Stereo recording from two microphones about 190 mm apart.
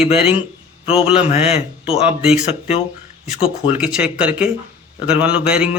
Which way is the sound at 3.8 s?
5° right (ahead or behind).